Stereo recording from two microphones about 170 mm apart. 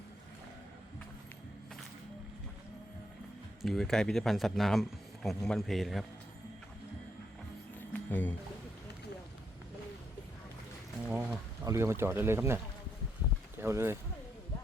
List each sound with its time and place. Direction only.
3.6 s speech: centre (ahead or behind)
7.9 s speech: 10° left (ahead or behind)
11.1 s a sound: 10° right (ahead or behind)
11.6 s speech: 15° right (ahead or behind)
13.6 s speech: 15° right (ahead or behind)